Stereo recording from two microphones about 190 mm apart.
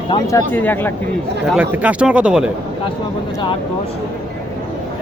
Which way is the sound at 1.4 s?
5° right (ahead or behind).